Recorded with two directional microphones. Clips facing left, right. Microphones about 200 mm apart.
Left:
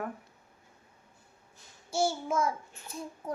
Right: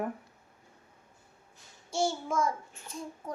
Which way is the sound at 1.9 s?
5° left (ahead or behind).